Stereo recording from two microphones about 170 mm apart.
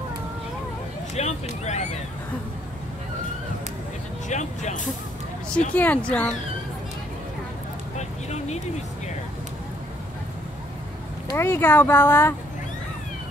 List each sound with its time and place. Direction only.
1.1 s speech: 40° left (ahead or behind)
4.3 s speech: 45° left (ahead or behind)
5.7 s speech: 10° left (ahead or behind)
11.3 s speech: 15° left (ahead or behind)